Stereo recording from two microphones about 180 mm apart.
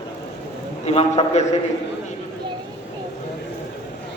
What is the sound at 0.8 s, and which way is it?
Speech, 35° left (ahead or behind).